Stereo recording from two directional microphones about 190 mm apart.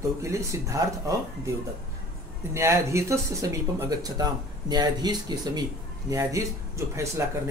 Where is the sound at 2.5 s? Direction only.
15° right (ahead or behind).